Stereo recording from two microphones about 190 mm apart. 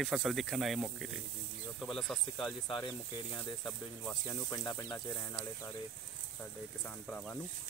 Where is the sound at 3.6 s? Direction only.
10° left (ahead or behind).